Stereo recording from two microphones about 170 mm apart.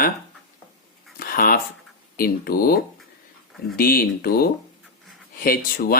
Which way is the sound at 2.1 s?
60° left (ahead or behind).